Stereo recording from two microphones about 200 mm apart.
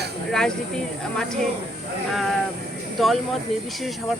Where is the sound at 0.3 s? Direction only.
5° left (ahead or behind).